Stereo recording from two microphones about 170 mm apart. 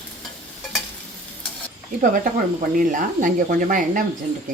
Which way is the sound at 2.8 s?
50° right (ahead or behind).